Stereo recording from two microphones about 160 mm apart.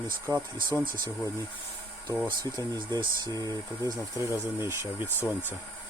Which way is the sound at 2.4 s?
25° right (ahead or behind).